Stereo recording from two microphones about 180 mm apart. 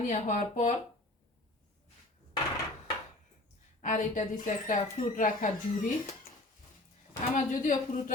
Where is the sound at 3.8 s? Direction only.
45° left (ahead or behind).